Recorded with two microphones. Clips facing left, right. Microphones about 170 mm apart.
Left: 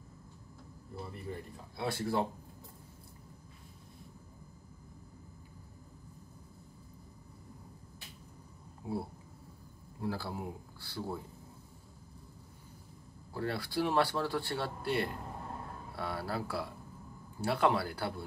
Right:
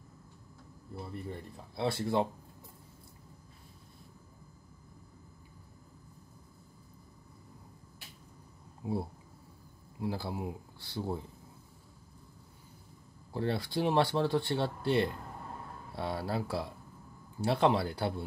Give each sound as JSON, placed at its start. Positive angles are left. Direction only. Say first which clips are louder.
{"t": 1.8, "sound": "speech", "louder": "right 3 dB", "side_deg": -25}
{"t": 8.8, "sound": "speech", "louder": "right 3 dB", "side_deg": -20}
{"t": 13.3, "sound": "speech", "louder": "right 3 dB", "side_deg": -20}